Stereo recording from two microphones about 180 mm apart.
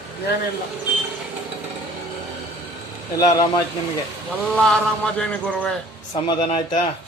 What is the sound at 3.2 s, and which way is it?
Speech, 20° left (ahead or behind).